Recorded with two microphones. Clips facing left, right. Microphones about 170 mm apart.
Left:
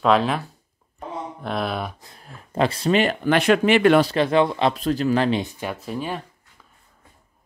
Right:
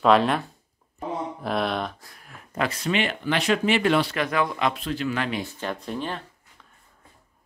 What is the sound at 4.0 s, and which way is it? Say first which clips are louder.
Speech: left 6 dB; 30° left (ahead or behind).